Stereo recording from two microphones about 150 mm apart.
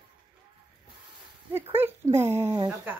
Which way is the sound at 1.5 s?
15° right (ahead or behind).